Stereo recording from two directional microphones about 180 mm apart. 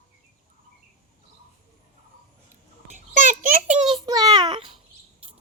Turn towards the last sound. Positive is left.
turn(degrees=-25)  # may be behind; listen again after turning